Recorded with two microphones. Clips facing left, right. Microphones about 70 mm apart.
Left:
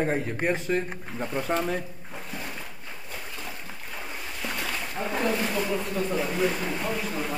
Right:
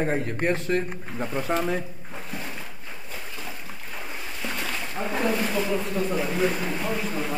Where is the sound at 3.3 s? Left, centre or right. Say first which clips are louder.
Right 1 dB; centre.